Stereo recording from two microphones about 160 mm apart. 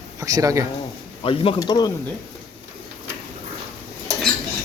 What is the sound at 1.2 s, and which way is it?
Speech, 35° left (ahead or behind).